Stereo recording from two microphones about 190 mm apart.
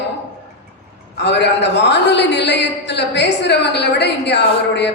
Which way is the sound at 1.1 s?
65° left (ahead or behind).